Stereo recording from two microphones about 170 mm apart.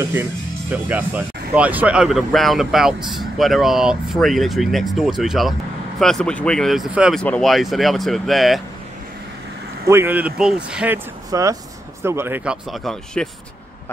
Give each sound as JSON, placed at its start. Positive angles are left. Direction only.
{"t": 0.0, "sound": "speech", "side_deg": -15}
{"t": 9.8, "sound": "speech", "side_deg": -15}
{"t": 11.2, "sound": "speech", "side_deg": -20}
{"t": 12.7, "sound": "speech", "side_deg": 5}